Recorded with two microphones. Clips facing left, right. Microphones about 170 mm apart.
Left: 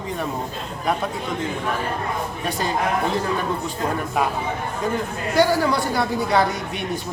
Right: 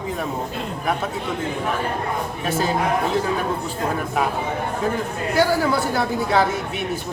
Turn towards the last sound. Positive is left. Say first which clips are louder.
# even
turn(degrees=0)  # may be behind; listen again after turning